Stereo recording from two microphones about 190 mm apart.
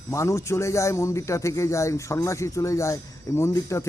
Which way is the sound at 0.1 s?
15° left (ahead or behind).